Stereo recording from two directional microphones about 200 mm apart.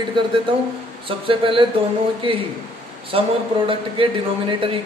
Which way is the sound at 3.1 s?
30° right (ahead or behind).